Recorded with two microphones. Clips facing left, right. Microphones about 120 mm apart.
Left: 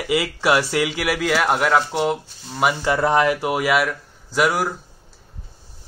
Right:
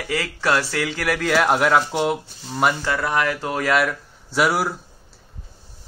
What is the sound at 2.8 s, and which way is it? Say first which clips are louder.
Speech: left 4 dB; 25° left (ahead or behind).